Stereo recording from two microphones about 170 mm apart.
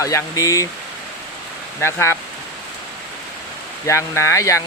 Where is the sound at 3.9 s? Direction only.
15° left (ahead or behind).